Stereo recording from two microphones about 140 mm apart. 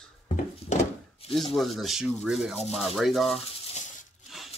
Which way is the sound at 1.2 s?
45° left (ahead or behind).